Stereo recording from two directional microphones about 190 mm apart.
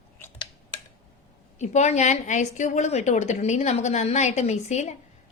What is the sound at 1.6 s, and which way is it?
A woman's voice, 35° left (ahead or behind).